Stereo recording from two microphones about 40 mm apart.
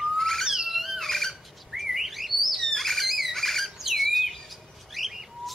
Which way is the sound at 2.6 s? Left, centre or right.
Centre.